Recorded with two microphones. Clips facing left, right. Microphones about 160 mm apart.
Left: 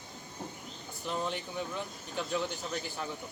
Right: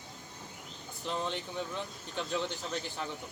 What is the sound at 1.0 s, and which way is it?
Speech, 10° left (ahead or behind).